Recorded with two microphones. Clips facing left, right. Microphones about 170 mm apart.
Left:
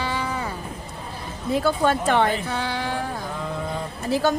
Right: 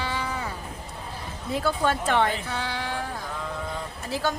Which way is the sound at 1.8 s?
40° left (ahead or behind).